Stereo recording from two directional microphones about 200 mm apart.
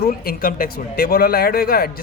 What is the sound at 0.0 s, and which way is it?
Speech, 45° left (ahead or behind).